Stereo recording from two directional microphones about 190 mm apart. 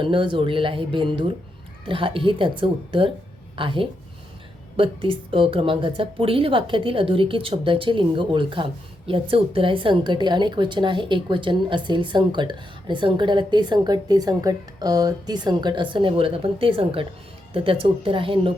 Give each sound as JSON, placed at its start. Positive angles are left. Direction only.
{"t": 0.0, "sound": "a woman's voice", "side_deg": -25}